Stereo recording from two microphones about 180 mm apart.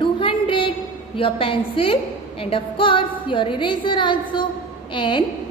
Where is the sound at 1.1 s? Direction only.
30° left (ahead or behind).